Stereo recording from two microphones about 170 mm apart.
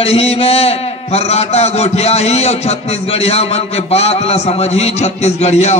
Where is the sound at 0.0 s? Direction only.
35° left (ahead or behind).